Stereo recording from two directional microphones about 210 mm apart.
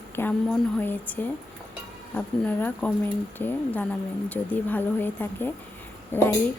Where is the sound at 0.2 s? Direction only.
10° left (ahead or behind).